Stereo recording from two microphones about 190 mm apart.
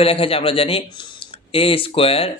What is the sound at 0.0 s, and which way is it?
Speech, 30° left (ahead or behind).